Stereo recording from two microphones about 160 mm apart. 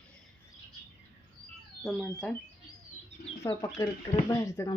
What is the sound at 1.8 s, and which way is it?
Speech, centre (ahead or behind).